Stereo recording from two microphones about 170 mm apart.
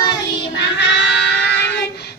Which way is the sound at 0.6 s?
90° left.